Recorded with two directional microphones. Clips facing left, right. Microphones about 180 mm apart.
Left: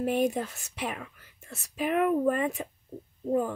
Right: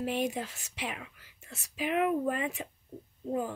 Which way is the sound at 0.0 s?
45° left (ahead or behind).